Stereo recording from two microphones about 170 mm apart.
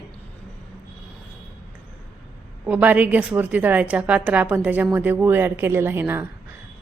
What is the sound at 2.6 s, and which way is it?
A woman's voice, 10° right (ahead or behind).